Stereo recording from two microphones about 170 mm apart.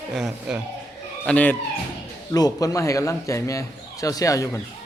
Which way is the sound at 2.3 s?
20° left (ahead or behind).